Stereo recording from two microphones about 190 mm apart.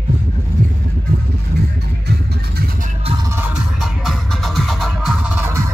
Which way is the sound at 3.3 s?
5° right (ahead or behind).